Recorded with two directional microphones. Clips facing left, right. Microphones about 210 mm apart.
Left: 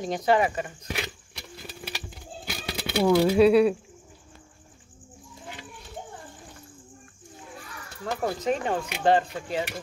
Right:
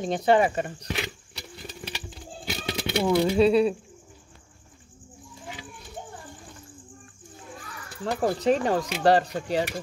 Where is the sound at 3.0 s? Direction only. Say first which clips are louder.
Left 2 dB; 5° left (ahead or behind).